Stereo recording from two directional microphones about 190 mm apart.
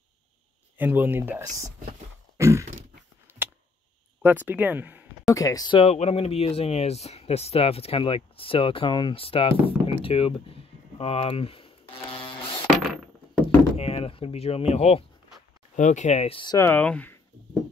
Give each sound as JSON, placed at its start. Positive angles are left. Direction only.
{"t": 0.7, "sound": "speech", "side_deg": -10}
{"t": 2.3, "sound": "a sound", "side_deg": -15}
{"t": 4.2, "sound": "speech", "side_deg": -10}
{"t": 5.3, "sound": "speech", "side_deg": 15}
{"t": 12.8, "sound": "a sound", "side_deg": 0}
{"t": 13.7, "sound": "speech", "side_deg": 35}
{"t": 16.5, "sound": "speech", "side_deg": 10}